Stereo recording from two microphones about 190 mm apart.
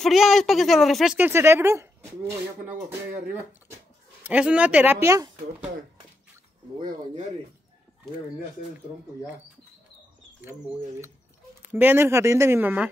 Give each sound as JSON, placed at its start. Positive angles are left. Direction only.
{"t": 0.0, "sound": "speech", "side_deg": 0}
{"t": 4.3, "sound": "speech", "side_deg": -5}
{"t": 11.7, "sound": "speech", "side_deg": -10}